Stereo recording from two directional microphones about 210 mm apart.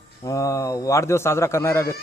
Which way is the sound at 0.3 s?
15° left (ahead or behind).